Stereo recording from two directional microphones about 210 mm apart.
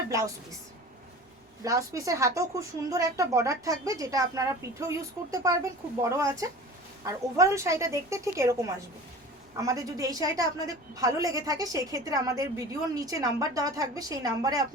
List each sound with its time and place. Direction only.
1.6 s a woman's voice: 15° right (ahead or behind)